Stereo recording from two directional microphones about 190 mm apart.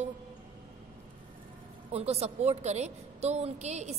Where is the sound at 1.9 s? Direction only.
35° right (ahead or behind).